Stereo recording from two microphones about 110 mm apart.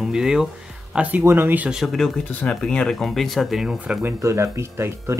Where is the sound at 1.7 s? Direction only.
Centre (ahead or behind).